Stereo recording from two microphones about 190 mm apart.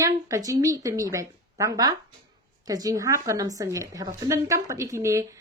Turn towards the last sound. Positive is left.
turn(degrees=-15)  # may be behind; listen again after turning